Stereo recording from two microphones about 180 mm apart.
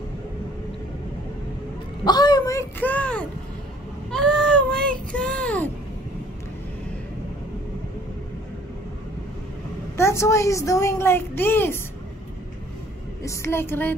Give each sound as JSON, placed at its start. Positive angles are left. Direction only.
{"t": 2.0, "sound": "a sound", "side_deg": 25}
{"t": 4.1, "sound": "child singing", "side_deg": 5}
{"t": 9.9, "sound": "a woman's voice", "side_deg": 15}
{"t": 13.2, "sound": "a woman's voice", "side_deg": 15}